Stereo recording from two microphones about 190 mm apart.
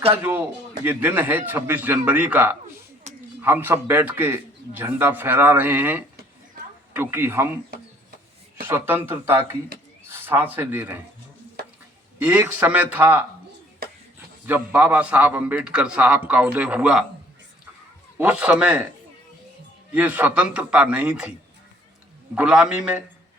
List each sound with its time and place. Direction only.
0.1 s a man's voice: 10° right (ahead or behind)
3.1 s a sound: 35° right (ahead or behind)
3.4 s a man's voice: 10° right (ahead or behind)
8.6 s a man's voice: 10° right (ahead or behind)
12.4 s a man's voice: 10° right (ahead or behind)
14.4 s a man's voice: 10° right (ahead or behind)
18.2 s a man's voice: 10° right (ahead or behind)
19.9 s a man's voice: 10° right (ahead or behind)
22.4 s a man's voice: 5° right (ahead or behind)